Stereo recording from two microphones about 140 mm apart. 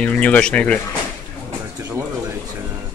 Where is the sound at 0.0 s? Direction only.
10° left (ahead or behind).